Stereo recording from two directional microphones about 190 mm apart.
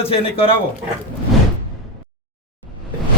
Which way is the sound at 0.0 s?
30° left (ahead or behind).